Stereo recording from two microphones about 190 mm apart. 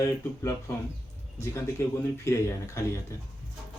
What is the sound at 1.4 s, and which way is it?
Speech, 15° left (ahead or behind).